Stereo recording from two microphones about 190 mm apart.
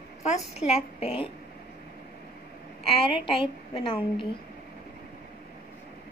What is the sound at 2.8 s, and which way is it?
A woman's voice, 30° left (ahead or behind).